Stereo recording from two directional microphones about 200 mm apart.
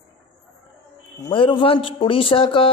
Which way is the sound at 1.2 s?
25° left (ahead or behind).